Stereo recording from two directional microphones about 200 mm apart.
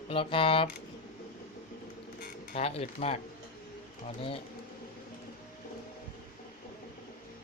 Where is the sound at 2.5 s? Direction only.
30° left (ahead or behind).